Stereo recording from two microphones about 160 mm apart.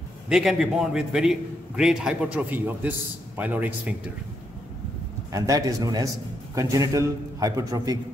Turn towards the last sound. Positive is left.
turn(degrees=-25)  # may be behind; listen again after turning